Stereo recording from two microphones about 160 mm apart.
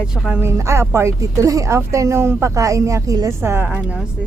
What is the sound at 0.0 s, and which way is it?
A woman's voice, 5° right (ahead or behind).